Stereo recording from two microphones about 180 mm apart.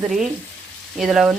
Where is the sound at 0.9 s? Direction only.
Centre (ahead or behind).